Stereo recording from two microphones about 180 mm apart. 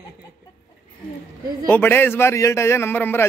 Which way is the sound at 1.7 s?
10° left (ahead or behind).